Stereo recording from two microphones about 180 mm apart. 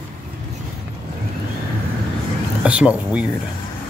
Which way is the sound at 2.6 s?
5° right (ahead or behind).